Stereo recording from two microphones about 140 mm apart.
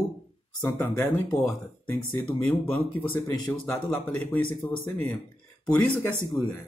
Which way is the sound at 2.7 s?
15° left (ahead or behind).